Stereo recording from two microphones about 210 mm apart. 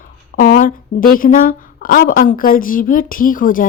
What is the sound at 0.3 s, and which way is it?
A woman's voice, 40° left (ahead or behind).